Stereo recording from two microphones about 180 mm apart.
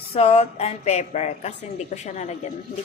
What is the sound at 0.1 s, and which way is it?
Speech, 35° left (ahead or behind).